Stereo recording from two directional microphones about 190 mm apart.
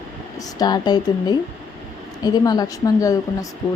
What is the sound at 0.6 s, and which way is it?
Speech, 20° left (ahead or behind).